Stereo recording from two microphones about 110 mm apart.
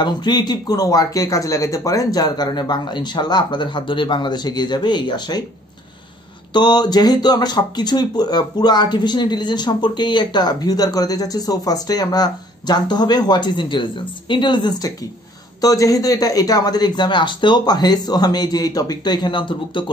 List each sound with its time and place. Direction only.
0.0 s speech: 40° left (ahead or behind)
6.5 s speech: 40° left (ahead or behind)